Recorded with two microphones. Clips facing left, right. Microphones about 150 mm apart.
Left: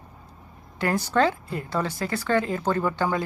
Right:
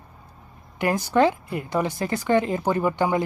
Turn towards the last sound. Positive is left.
turn(degrees=-20)  # may be behind; listen again after turning